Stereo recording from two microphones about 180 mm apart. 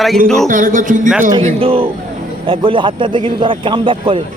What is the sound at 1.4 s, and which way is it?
Speech, 30° right (ahead or behind).